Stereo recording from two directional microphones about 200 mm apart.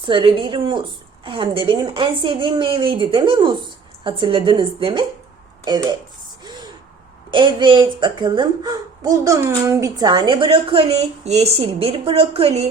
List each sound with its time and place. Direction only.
0.0 s speech: 25° right (ahead or behind)
6.4 s a sound: 20° right (ahead or behind)
7.3 s speech: 25° right (ahead or behind)